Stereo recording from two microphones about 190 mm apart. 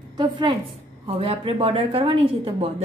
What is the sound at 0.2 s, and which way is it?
A woman's voice, 25° right (ahead or behind).